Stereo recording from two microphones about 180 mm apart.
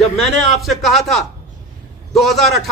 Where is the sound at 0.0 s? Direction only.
Centre (ahead or behind).